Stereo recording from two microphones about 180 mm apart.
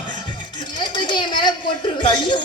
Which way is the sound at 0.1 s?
25° left (ahead or behind).